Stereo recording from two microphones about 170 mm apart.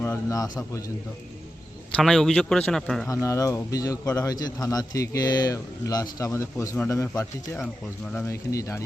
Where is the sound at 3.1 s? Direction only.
20° left (ahead or behind).